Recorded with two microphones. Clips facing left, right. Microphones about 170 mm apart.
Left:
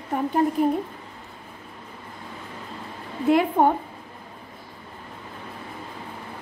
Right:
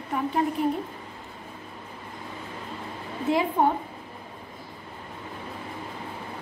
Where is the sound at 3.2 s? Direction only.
55° left (ahead or behind).